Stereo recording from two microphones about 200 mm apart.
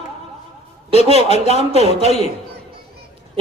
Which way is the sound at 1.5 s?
35° left (ahead or behind).